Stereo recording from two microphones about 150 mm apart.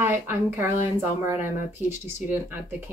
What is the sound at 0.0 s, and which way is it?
Speech, 15° right (ahead or behind).